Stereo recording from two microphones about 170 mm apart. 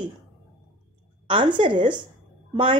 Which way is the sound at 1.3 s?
30° right (ahead or behind).